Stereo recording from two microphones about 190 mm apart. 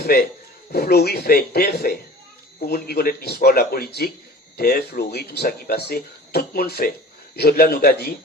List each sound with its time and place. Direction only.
0.0 s speech: 55° left (ahead or behind)